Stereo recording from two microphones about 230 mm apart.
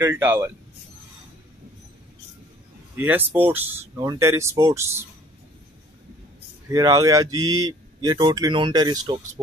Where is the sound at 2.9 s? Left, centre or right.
Centre.